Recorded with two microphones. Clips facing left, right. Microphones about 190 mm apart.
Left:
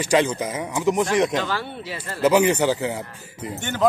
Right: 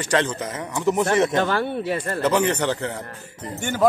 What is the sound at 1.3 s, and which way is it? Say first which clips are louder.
Speech: right 4 dB; 55° right (ahead or behind).